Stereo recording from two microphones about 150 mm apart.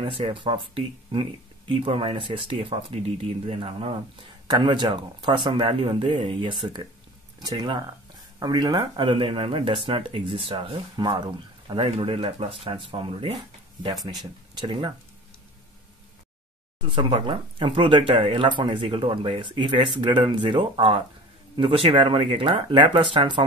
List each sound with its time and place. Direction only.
0.0 s speech: 35° right (ahead or behind)
16.9 s speech: 35° right (ahead or behind)